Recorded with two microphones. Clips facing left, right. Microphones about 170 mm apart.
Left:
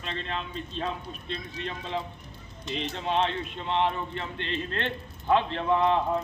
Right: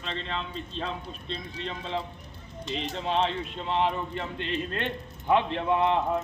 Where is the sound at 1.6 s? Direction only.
5° left (ahead or behind).